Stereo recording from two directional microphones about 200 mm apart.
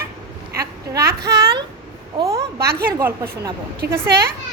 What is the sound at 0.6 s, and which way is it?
Speech, 50° right (ahead or behind).